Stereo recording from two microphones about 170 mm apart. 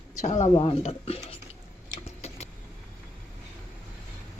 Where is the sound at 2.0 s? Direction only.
40° left (ahead or behind).